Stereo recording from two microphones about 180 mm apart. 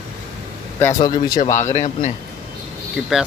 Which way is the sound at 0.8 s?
10° left (ahead or behind).